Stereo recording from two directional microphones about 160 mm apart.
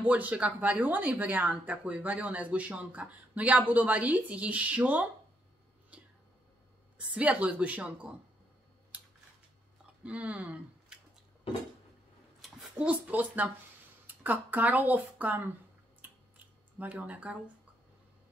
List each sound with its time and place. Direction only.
0.0 s speech: 10° right (ahead or behind)
7.2 s speech: 10° right (ahead or behind)
10.0 s speech: 5° right (ahead or behind)
12.4 s speech: 5° right (ahead or behind)
16.7 s speech: 10° right (ahead or behind)